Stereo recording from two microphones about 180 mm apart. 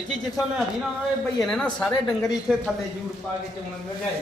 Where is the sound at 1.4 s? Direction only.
5° left (ahead or behind).